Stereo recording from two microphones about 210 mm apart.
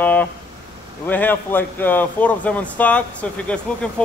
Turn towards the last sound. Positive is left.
turn(degrees=5)  # may be behind; listen again after turning